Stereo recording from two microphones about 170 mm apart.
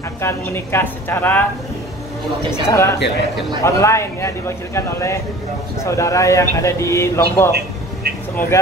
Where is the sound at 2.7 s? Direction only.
15° left (ahead or behind).